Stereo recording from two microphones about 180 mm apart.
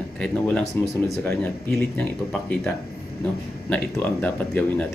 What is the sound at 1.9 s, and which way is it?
Speech, 5° left (ahead or behind).